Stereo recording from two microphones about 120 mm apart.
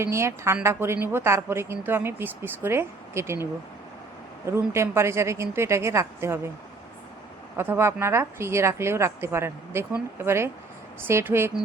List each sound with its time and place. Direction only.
0.0 s a woman's voice: 20° right (ahead or behind)
4.4 s a woman's voice: 20° right (ahead or behind)
7.5 s a woman's voice: 20° right (ahead or behind)